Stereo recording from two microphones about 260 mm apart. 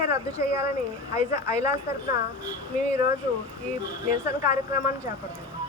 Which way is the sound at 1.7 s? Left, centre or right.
Centre.